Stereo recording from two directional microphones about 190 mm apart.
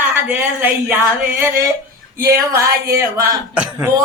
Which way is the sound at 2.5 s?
15° right (ahead or behind).